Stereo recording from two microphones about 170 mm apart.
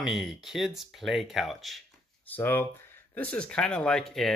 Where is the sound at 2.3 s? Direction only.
10° left (ahead or behind).